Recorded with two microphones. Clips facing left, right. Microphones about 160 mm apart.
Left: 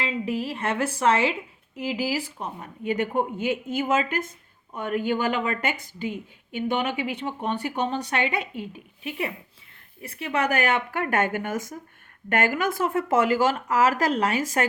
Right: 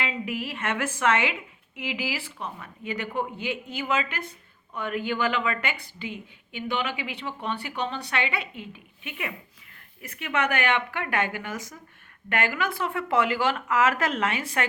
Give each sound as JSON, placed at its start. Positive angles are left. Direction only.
{"t": 0.0, "sound": "a woman's voice", "side_deg": 35}